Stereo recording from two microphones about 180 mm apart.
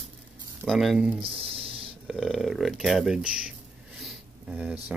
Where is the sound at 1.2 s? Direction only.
30° right (ahead or behind).